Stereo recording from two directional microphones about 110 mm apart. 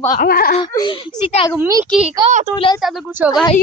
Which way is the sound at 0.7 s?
35° left (ahead or behind).